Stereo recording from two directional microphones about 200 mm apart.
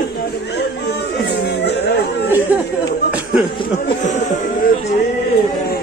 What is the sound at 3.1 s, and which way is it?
Chatter, 5° right (ahead or behind).